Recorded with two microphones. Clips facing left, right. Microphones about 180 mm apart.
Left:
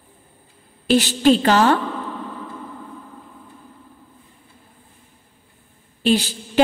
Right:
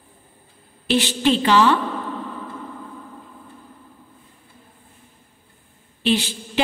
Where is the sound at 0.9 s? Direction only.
40° left (ahead or behind).